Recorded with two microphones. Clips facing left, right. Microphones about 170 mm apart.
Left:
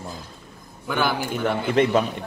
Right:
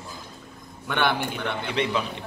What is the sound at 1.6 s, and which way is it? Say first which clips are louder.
Speech: left 7 dB; 45° left (ahead or behind).